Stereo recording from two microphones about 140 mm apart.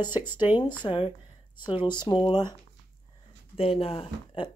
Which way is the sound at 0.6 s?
35° left (ahead or behind).